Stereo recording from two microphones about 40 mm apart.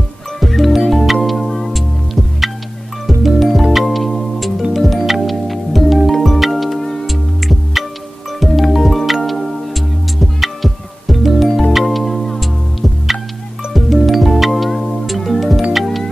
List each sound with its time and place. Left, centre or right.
0.4 s music: centre
3.1 s music: centre
13.7 s music: centre